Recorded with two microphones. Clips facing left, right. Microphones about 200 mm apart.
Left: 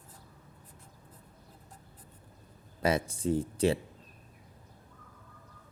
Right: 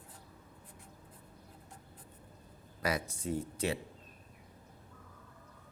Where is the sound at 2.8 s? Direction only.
30° left (ahead or behind).